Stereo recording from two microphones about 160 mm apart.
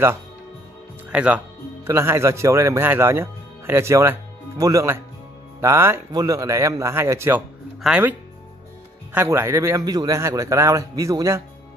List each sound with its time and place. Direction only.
1.1 s a man's voice: 10° right (ahead or behind)